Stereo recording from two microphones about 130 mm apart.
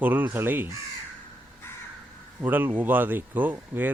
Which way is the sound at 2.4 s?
15° right (ahead or behind).